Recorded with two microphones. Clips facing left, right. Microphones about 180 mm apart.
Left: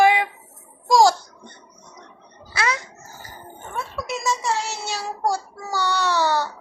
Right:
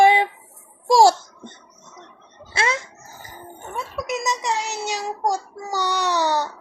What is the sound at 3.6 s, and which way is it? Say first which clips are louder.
A child's voice: right 1 dB; 15° right (ahead or behind).